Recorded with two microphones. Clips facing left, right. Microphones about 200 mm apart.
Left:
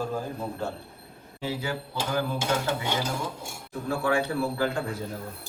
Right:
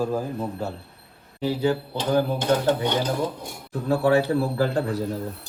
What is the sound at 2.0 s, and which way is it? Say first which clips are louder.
Speech: right 4 dB; 10° left (ahead or behind).